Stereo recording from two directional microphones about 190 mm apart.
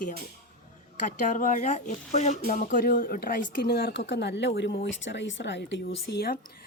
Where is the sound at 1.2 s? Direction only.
40° left (ahead or behind).